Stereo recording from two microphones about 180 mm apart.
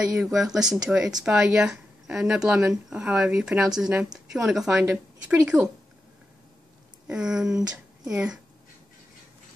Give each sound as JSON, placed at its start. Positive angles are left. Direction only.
{"t": 0.1, "sound": "a woman's voice", "side_deg": 0}
{"t": 7.1, "sound": "speech", "side_deg": -5}